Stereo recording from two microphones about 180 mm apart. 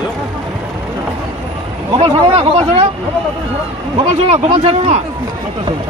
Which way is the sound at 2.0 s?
30° right (ahead or behind).